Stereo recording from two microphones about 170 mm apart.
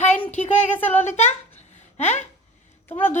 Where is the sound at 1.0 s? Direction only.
40° left (ahead or behind).